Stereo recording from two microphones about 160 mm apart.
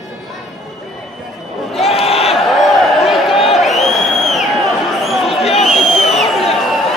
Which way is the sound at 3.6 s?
Centre (ahead or behind).